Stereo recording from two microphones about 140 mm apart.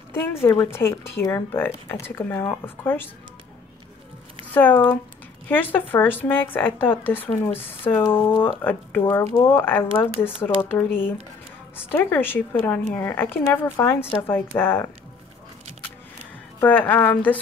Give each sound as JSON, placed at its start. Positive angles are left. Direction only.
{"t": 0.1, "sound": "speech", "side_deg": 15}
{"t": 4.6, "sound": "speech", "side_deg": 15}
{"t": 16.5, "sound": "speech", "side_deg": 10}